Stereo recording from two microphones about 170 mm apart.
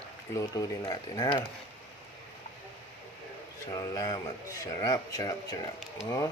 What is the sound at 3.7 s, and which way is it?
Speech, 20° left (ahead or behind).